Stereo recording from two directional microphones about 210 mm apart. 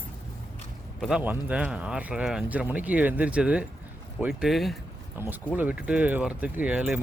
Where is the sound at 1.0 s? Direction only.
5° right (ahead or behind).